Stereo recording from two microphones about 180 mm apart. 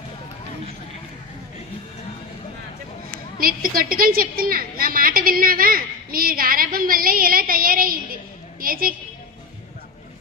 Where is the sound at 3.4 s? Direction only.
50° right (ahead or behind).